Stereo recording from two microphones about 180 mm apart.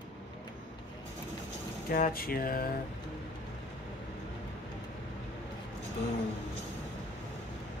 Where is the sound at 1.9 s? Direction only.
50° left (ahead or behind).